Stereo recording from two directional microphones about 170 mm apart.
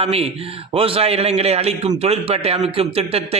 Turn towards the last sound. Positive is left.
turn(degrees=-35)  # may be behind; listen again after turning